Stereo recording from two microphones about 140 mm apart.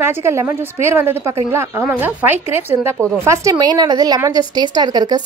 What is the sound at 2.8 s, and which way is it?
A woman's voice, 20° right (ahead or behind).